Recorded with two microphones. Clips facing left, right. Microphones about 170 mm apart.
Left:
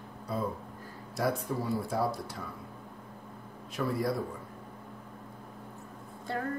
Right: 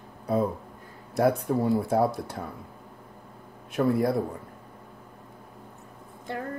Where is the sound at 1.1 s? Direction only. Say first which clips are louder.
Right 8 dB; 60° right (ahead or behind).